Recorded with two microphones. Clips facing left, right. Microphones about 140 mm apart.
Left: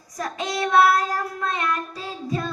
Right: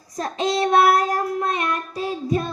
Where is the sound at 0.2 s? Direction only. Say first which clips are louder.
Right 5 dB; 25° right (ahead or behind).